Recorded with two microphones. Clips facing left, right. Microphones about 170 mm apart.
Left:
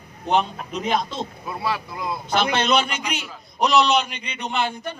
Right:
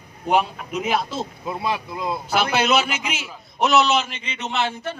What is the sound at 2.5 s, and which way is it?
A man's voice, 5° right (ahead or behind).